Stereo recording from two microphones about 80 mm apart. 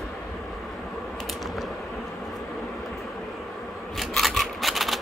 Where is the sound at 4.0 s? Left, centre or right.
Centre.